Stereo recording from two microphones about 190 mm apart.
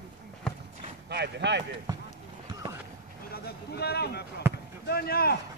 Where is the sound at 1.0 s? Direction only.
60° right (ahead or behind).